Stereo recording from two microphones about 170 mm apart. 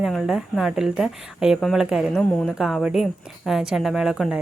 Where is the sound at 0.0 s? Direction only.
5° right (ahead or behind).